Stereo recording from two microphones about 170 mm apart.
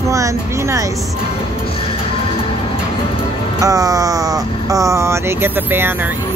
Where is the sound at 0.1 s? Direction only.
20° right (ahead or behind).